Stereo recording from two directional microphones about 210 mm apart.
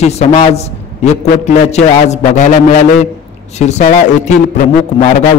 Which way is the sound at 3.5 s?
35° left (ahead or behind).